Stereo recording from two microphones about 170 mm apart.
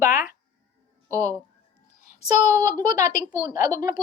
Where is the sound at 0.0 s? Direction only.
55° left (ahead or behind).